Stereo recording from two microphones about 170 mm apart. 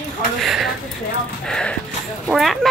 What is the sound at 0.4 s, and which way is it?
Speech, centre (ahead or behind).